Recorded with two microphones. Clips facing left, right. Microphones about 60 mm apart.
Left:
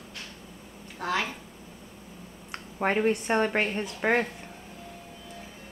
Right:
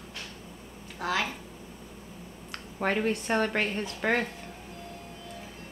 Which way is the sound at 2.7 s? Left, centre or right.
Centre.